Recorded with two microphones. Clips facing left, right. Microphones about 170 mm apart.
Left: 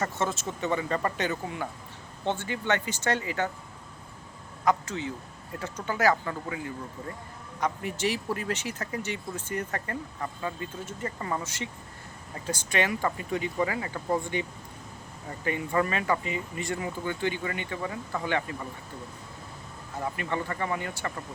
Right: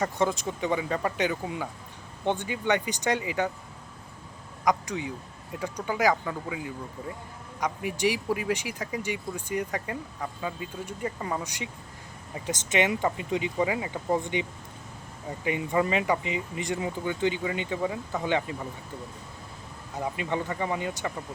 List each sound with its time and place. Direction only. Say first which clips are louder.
0.0 s speech: right 3 dB; 15° right (ahead or behind)
4.6 s speech: even; 15° right (ahead or behind)
7.6 s speech: right 2 dB; 10° right (ahead or behind)
15.4 s speech: right 1 dB; 15° right (ahead or behind)
20.0 s speech: right 2 dB; 15° right (ahead or behind)